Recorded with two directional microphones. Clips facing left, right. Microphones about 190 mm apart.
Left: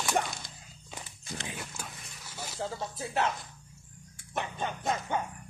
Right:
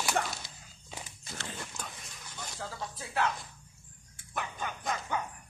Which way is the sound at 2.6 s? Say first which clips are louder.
Left 6 dB; 25° left (ahead or behind).